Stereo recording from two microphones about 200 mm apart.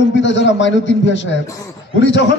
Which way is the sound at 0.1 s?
65° left (ahead or behind).